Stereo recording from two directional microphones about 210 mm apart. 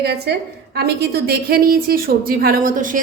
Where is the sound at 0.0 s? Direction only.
50° right (ahead or behind).